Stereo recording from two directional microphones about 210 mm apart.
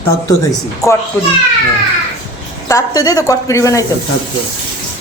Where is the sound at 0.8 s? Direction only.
15° left (ahead or behind).